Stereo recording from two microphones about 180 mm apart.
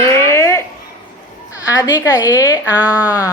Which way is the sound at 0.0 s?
15° left (ahead or behind).